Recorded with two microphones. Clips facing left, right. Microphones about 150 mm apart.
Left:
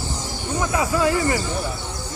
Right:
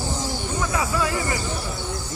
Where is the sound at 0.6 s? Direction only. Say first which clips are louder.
Left 5 dB; 25° left (ahead or behind).